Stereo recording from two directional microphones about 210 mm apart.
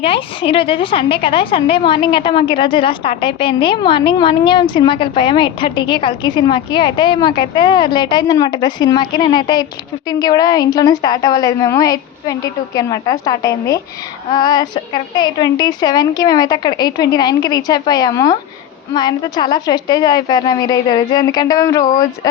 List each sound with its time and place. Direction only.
0.0 s a woman's voice: 25° left (ahead or behind)